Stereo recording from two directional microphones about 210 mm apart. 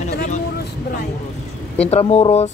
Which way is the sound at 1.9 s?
30° left (ahead or behind).